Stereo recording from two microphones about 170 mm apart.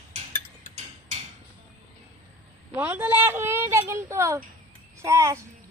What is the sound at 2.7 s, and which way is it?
A woman's voice, 10° right (ahead or behind).